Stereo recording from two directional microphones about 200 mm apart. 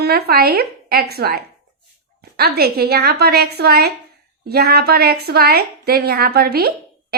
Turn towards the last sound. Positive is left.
turn(degrees=-50)  # may be behind; listen again after turning